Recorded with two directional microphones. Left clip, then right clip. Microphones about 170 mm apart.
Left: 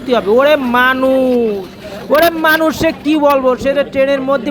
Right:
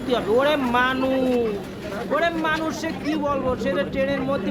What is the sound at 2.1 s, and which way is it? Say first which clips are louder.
A man's voice: left 12 dB; 45° left (ahead or behind).